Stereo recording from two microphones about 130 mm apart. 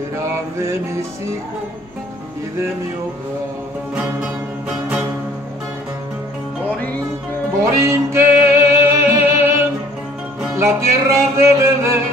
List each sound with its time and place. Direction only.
3.9 s music: 10° right (ahead or behind)
7.8 s music: 20° right (ahead or behind)